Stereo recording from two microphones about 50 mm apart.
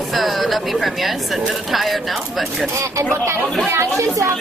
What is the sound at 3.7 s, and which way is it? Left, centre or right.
Speech, right.